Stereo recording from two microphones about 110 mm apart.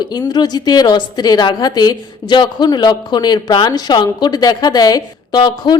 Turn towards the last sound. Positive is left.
turn(degrees=40)  # may be behind; listen again after turning